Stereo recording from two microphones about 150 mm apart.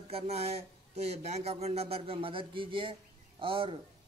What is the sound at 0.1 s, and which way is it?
Speech, 45° right (ahead or behind).